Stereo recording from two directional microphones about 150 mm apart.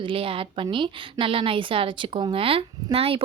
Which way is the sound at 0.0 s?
35° right (ahead or behind).